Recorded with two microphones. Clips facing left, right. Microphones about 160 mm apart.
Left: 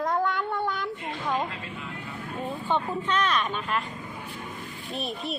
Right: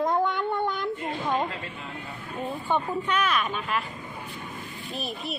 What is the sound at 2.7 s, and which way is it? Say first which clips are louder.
Speech: even; 10° right (ahead or behind).